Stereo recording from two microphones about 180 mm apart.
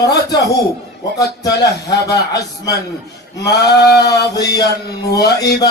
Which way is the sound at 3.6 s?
65° left (ahead or behind).